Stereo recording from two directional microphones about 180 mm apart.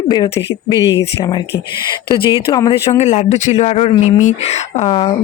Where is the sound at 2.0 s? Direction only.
30° left (ahead or behind).